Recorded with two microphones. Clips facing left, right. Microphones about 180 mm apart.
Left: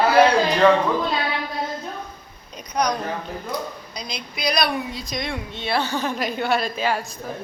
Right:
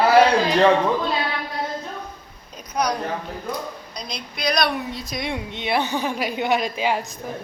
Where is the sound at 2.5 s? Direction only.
5° right (ahead or behind).